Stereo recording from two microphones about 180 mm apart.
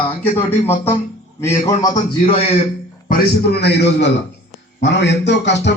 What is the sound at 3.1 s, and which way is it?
A man's voice, 65° left (ahead or behind).